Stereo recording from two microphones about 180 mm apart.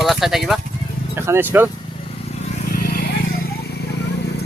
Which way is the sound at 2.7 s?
55° left (ahead or behind).